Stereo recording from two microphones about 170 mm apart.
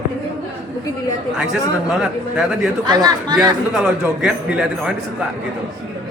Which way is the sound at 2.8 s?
25° right (ahead or behind).